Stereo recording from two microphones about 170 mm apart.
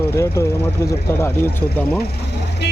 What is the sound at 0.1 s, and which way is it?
Speech, 15° left (ahead or behind).